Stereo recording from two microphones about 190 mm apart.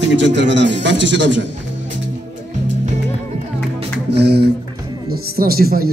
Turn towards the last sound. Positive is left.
turn(degrees=-55)  # may be behind; listen again after turning